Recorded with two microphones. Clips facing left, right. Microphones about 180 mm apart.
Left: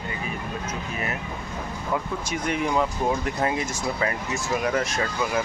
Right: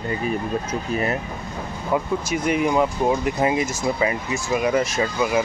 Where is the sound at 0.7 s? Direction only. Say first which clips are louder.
Right 7 dB; 35° right (ahead or behind).